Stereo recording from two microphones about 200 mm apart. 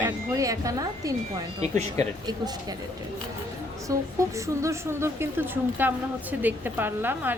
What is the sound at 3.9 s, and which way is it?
Speech, 15° right (ahead or behind).